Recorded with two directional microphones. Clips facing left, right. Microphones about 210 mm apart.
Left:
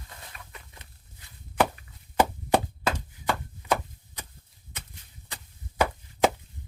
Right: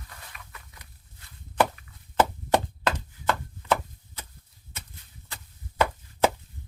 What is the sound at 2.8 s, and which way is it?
Chop, 10° left (ahead or behind).